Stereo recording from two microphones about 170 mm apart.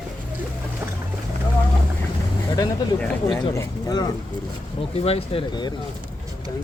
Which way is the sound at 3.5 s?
20° left (ahead or behind).